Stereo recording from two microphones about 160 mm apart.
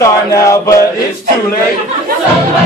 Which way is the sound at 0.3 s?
20° left (ahead or behind).